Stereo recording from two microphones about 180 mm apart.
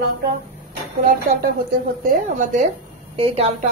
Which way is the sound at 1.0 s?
55° right (ahead or behind).